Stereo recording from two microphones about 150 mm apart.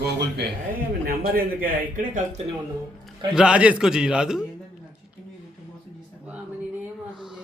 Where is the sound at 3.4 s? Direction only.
5° right (ahead or behind).